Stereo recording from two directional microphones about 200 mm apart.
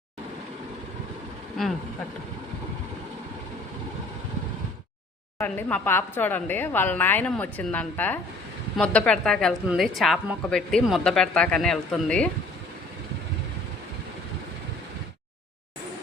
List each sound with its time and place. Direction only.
1.6 s speech: centre (ahead or behind)
5.4 s a woman's voice: 10° left (ahead or behind)